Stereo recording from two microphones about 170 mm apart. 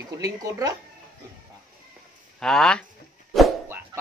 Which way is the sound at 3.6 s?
15° right (ahead or behind).